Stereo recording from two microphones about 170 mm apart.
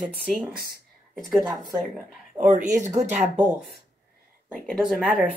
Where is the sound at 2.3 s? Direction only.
50° right (ahead or behind).